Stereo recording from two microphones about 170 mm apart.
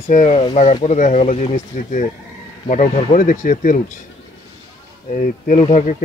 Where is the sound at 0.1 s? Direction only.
45° left (ahead or behind).